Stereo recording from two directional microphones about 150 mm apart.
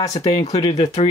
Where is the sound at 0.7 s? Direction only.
45° left (ahead or behind).